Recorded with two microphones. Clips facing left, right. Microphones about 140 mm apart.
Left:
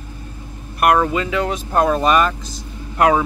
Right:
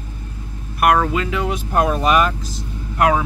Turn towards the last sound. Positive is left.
turn(degrees=0)  # may be behind; listen again after turning